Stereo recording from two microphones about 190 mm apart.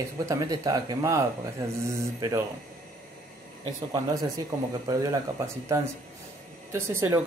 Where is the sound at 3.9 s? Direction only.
20° right (ahead or behind).